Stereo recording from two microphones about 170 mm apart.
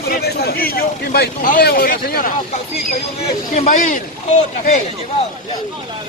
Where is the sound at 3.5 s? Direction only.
50° left (ahead or behind).